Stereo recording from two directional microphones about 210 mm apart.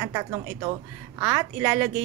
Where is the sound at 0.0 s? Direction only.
15° right (ahead or behind).